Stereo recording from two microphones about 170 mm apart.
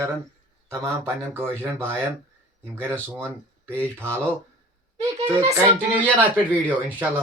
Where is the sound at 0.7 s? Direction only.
15° right (ahead or behind).